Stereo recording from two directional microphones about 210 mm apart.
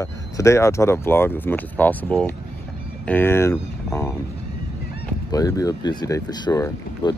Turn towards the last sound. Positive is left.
turn(degrees=15)  # may be behind; listen again after turning